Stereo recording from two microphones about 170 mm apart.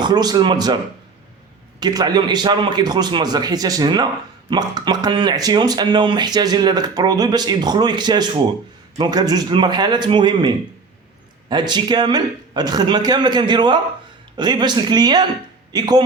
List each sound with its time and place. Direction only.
0.0 s a man's voice: 25° right (ahead or behind)
1.8 s a man's voice: 25° right (ahead or behind)